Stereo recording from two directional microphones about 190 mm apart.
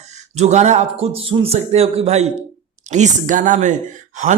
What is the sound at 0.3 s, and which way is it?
Speech, 35° right (ahead or behind).